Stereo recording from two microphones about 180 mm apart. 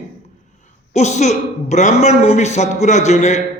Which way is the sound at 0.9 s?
40° left (ahead or behind).